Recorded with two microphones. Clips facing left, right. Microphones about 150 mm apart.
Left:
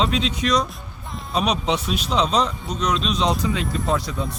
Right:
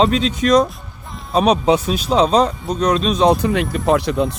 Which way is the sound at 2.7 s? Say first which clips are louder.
Right 6 dB; 50° right (ahead or behind).